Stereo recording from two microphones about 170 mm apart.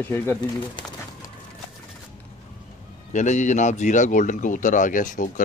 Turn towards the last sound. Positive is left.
turn(degrees=50)  # may be behind; listen again after turning